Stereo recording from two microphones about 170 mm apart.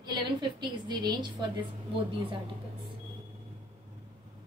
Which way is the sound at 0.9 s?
25° right (ahead or behind).